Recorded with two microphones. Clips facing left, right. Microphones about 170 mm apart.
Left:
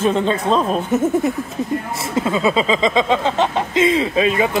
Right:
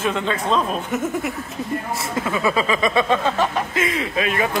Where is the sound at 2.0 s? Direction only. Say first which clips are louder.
Left 5 dB; 25° left (ahead or behind).